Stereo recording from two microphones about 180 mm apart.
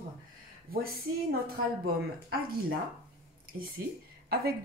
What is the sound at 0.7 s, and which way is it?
Speech, 55° right (ahead or behind).